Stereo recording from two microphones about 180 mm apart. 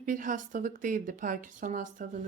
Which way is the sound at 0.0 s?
45° right (ahead or behind).